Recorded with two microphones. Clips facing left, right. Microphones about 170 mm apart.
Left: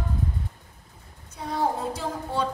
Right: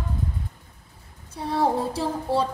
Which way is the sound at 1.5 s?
30° right (ahead or behind).